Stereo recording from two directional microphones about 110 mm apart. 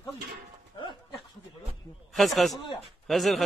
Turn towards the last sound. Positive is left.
turn(degrees=0)  # may be behind; listen again after turning